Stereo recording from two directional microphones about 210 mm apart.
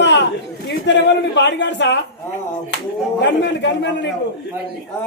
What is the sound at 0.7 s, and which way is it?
A man's voice, 55° left (ahead or behind).